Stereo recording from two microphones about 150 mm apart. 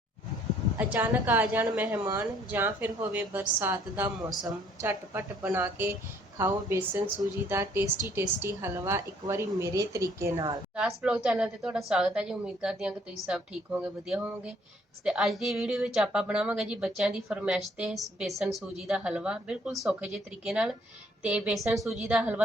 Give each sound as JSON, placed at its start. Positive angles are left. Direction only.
{"t": 0.8, "sound": "a woman's voice", "side_deg": -10}
{"t": 10.8, "sound": "a woman's voice", "side_deg": -5}